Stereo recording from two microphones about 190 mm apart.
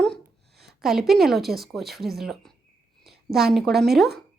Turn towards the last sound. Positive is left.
turn(degrees=0)  # may be behind; listen again after turning